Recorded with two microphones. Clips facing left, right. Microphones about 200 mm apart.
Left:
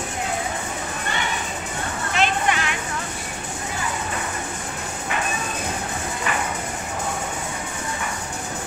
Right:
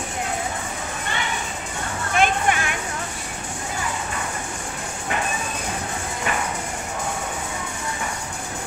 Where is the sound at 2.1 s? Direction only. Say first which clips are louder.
Right 2 dB; 50° right (ahead or behind).